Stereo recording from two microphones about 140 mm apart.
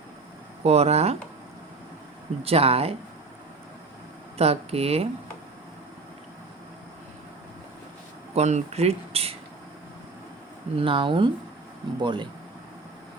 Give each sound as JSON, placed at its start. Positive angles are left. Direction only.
{"t": 0.6, "sound": "speech", "side_deg": -50}
{"t": 2.4, "sound": "speech", "side_deg": -45}
{"t": 4.4, "sound": "speech", "side_deg": -45}
{"t": 8.4, "sound": "speech", "side_deg": -55}
{"t": 10.8, "sound": "speech", "side_deg": -40}